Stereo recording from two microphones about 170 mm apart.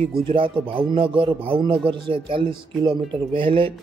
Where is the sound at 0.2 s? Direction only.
30° right (ahead or behind).